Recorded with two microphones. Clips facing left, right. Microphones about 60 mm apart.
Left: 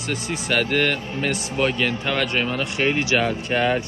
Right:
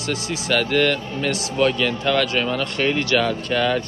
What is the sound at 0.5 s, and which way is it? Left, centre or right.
Speech, centre.